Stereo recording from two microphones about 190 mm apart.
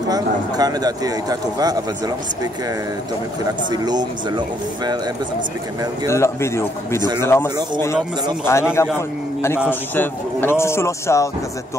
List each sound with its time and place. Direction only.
0.1 s speech: 20° right (ahead or behind)
3.4 s speech: 20° right (ahead or behind)
6.0 s a man's voice: 15° left (ahead or behind)
9.7 s a man's voice: 10° left (ahead or behind)